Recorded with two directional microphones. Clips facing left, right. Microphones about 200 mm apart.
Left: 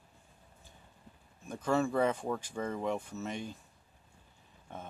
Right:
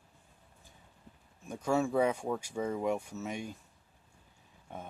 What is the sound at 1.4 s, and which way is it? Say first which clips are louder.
Speech: even; 10° right (ahead or behind).